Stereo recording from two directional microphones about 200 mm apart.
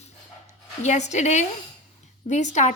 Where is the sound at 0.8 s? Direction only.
35° left (ahead or behind).